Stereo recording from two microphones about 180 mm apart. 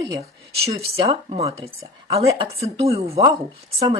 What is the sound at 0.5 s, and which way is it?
Speech, 35° right (ahead or behind).